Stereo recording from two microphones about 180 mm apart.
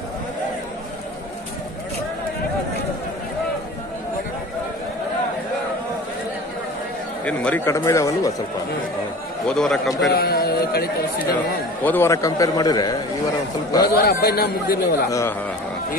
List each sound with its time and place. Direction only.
7.2 s speech: 10° left (ahead or behind)
9.5 s a man's voice: centre (ahead or behind)
10.1 s speech: 60° left (ahead or behind)
11.8 s a man's voice: 10° left (ahead or behind)
13.9 s speech: 60° left (ahead or behind)
15.0 s speech: 15° left (ahead or behind)